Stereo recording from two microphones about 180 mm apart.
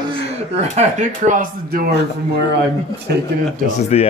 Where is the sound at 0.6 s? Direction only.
40° right (ahead or behind).